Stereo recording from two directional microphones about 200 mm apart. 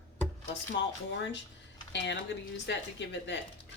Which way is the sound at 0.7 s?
60° left (ahead or behind).